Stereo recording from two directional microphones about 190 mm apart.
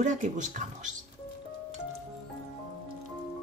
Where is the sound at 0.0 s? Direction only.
40° right (ahead or behind).